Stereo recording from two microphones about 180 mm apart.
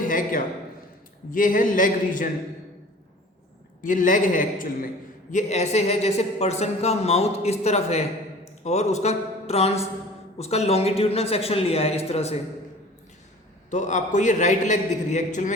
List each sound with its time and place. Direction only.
0.1 s a sound: 50° left (ahead or behind)
1.3 s a man's voice: 50° left (ahead or behind)
3.8 s a man's voice: 50° left (ahead or behind)
13.7 s a man's voice: 45° left (ahead or behind)